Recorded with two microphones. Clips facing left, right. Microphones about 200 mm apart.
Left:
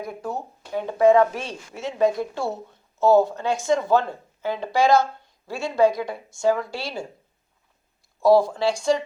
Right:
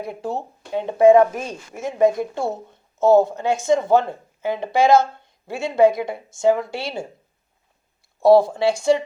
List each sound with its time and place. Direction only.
0.0 s speech: 30° right (ahead or behind)
1.3 s speech: 45° right (ahead or behind)
1.9 s speech: 20° right (ahead or behind)
8.2 s speech: 25° right (ahead or behind)